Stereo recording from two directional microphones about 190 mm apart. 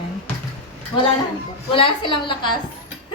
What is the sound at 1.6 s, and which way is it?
Speech, 25° left (ahead or behind).